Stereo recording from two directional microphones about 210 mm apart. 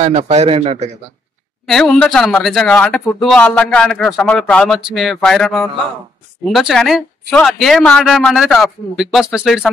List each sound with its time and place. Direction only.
0.0 s a man's voice: 30° right (ahead or behind)
1.7 s speech: 5° left (ahead or behind)